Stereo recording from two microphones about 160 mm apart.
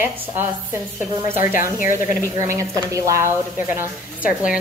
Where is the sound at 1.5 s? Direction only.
60° left (ahead or behind).